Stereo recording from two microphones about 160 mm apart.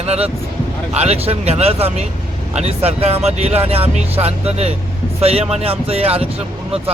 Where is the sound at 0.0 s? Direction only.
40° right (ahead or behind).